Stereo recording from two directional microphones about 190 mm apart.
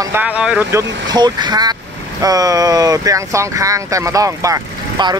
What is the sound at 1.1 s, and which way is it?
Speech, 25° right (ahead or behind).